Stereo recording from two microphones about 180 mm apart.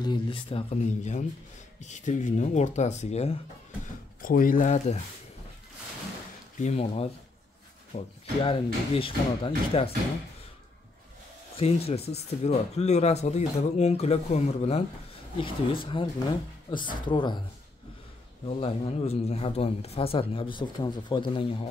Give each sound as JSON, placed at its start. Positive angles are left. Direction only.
{"t": 0.0, "sound": "speech", "side_deg": 25}
{"t": 4.2, "sound": "speech", "side_deg": 50}
{"t": 6.6, "sound": "speech", "side_deg": 35}
{"t": 11.5, "sound": "speech", "side_deg": 35}
{"t": 18.6, "sound": "speech", "side_deg": 35}